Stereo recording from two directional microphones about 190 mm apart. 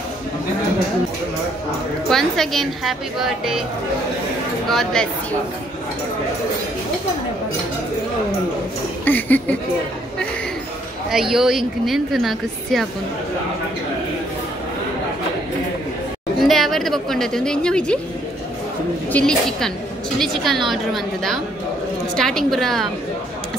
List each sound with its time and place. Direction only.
2.0 s speech: centre (ahead or behind)
4.6 s speech: centre (ahead or behind)
9.0 s speech: 10° left (ahead or behind)
11.1 s speech: centre (ahead or behind)
16.3 s a woman's voice: centre (ahead or behind)
19.1 s speech: 5° left (ahead or behind)